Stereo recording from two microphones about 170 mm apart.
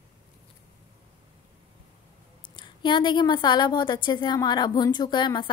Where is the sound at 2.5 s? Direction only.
25° left (ahead or behind).